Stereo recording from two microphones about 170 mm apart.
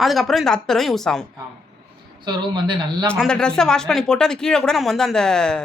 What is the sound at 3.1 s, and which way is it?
Speech, 5° left (ahead or behind).